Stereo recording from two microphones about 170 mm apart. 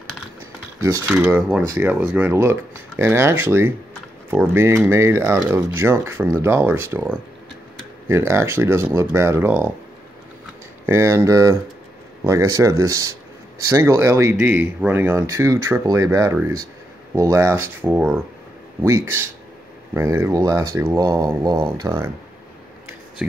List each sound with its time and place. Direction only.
0.8 s speech: 15° right (ahead or behind)
8.1 s speech: 15° right (ahead or behind)
10.9 s speech: 15° right (ahead or behind)